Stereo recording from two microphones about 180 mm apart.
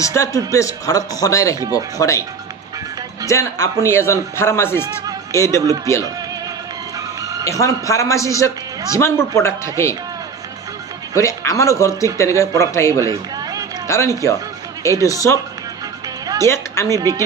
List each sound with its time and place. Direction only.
0.0 s a man's voice: 15° left (ahead or behind)
3.2 s a man's voice: 15° left (ahead or behind)
7.4 s a man's voice: 15° left (ahead or behind)
11.1 s a man's voice: 15° left (ahead or behind)
13.0 s a sound: 20° right (ahead or behind)
13.8 s a man's voice: 15° left (ahead or behind)
16.4 s a man's voice: 15° left (ahead or behind)
16.9 s speech: 20° right (ahead or behind)